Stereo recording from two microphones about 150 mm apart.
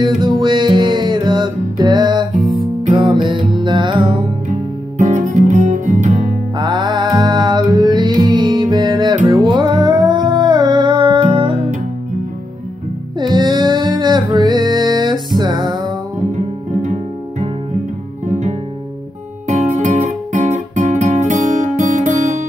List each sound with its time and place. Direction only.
0.0 s music: 30° right (ahead or behind)
4.5 s music: 55° right (ahead or behind)
6.6 s music: 30° right (ahead or behind)
13.2 s music: 30° right (ahead or behind)
16.8 s music: 55° right (ahead or behind)
19.4 s music: 50° right (ahead or behind)